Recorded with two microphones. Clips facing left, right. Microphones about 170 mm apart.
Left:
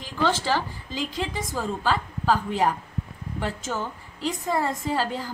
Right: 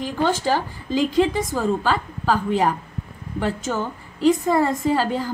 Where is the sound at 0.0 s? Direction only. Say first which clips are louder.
Right 4 dB; 50° right (ahead or behind).